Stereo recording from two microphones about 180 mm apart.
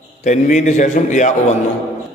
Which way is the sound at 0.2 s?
40° left (ahead or behind).